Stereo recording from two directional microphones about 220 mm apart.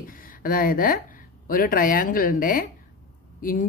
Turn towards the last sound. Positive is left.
turn(degrees=40)  # may be behind; listen again after turning